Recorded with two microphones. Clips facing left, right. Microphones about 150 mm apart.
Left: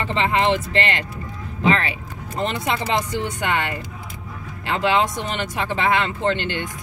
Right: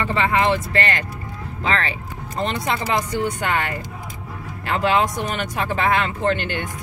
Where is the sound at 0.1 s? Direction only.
25° left (ahead or behind).